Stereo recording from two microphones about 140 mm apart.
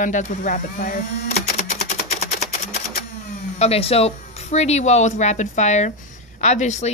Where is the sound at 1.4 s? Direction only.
55° left (ahead or behind).